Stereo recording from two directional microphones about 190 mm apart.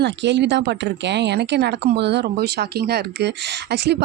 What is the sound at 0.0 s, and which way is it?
A woman's voice, 65° right (ahead or behind).